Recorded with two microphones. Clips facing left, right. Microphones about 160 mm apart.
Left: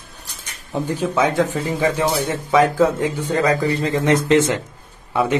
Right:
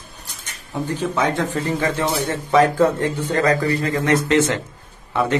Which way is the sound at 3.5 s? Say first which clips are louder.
Even; 20° left (ahead or behind).